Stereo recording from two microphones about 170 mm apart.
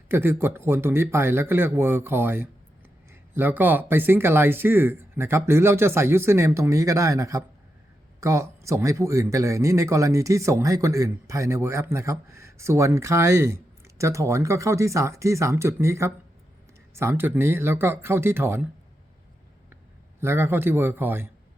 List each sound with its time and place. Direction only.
0.1 s speech: 15° right (ahead or behind)
20.2 s speech: 15° right (ahead or behind)